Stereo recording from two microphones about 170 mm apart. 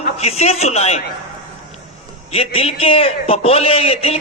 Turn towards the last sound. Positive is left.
turn(degrees=35)  # may be behind; listen again after turning